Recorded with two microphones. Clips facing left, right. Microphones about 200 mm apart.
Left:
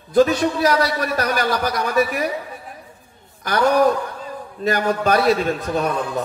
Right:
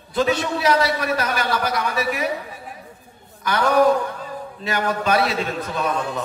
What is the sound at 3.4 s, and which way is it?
A man's voice, 45° left (ahead or behind).